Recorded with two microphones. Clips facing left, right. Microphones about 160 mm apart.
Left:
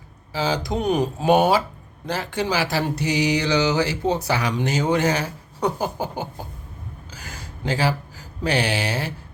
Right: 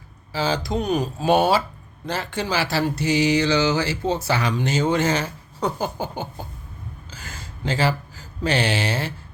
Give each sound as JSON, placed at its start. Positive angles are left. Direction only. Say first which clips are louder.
{"t": 0.3, "sound": "speech", "louder": "even", "side_deg": 15}